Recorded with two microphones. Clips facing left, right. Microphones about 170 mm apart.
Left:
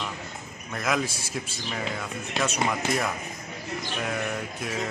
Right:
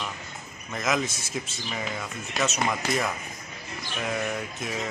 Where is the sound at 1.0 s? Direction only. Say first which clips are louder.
Even; 30° left (ahead or behind).